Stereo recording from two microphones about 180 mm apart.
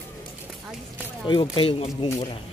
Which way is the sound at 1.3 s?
30° left (ahead or behind).